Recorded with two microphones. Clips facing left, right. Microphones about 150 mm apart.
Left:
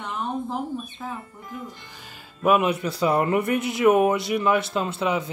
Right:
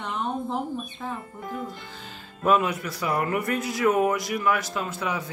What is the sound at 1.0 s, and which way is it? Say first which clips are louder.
Speech: right 3 dB; 5° left (ahead or behind).